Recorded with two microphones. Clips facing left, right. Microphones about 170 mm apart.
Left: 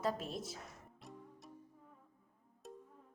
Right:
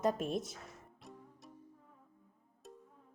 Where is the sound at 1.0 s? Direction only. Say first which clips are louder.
Left 3 dB; centre (ahead or behind).